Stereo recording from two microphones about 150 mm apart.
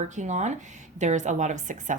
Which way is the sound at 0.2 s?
50° right (ahead or behind).